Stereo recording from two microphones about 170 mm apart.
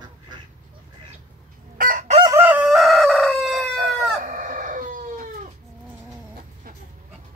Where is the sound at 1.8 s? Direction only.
50° right (ahead or behind).